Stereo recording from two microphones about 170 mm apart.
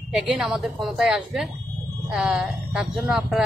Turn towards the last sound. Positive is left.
turn(degrees=-5)  # may be behind; listen again after turning